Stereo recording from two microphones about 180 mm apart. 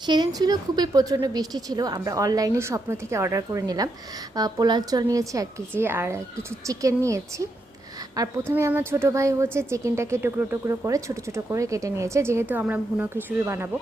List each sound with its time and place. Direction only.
0.0 s a woman's voice: 25° right (ahead or behind)